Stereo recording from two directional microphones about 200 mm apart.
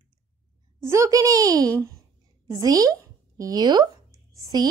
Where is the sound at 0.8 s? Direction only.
15° right (ahead or behind).